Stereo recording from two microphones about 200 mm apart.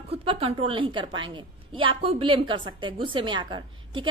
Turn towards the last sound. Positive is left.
turn(degrees=-25)  # may be behind; listen again after turning